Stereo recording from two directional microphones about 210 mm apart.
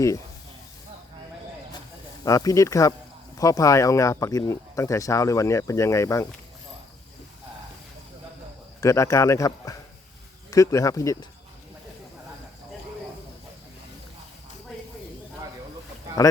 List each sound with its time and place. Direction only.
2.2 s speech: 15° left (ahead or behind)
8.8 s speech: 15° left (ahead or behind)